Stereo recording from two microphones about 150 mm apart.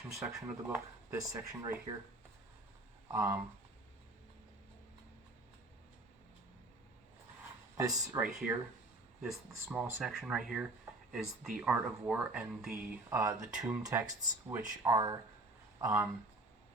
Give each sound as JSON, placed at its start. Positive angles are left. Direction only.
{"t": 0.3, "sound": "speech", "side_deg": -15}
{"t": 3.1, "sound": "speech", "side_deg": -20}
{"t": 7.8, "sound": "speech", "side_deg": -20}
{"t": 8.2, "sound": "speech", "side_deg": -10}
{"t": 9.7, "sound": "speech", "side_deg": -5}